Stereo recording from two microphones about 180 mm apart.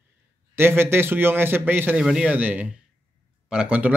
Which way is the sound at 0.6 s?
15° right (ahead or behind).